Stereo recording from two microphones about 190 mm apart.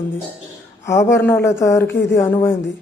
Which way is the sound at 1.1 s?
10° left (ahead or behind).